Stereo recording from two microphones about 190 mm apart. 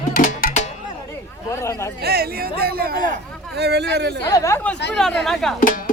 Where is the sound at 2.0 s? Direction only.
55° right (ahead or behind).